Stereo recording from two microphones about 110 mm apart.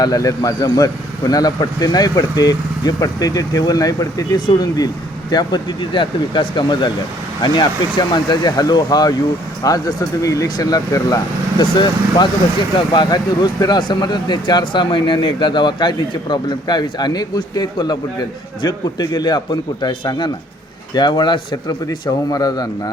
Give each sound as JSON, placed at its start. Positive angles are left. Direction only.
{"t": 0.0, "sound": "speech", "side_deg": 35}